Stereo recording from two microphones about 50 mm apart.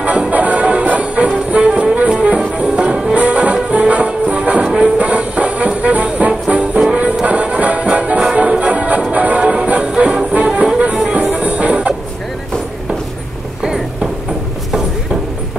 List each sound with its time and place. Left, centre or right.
0.0 s music: right
1.7 s music: centre
2.0 s music: right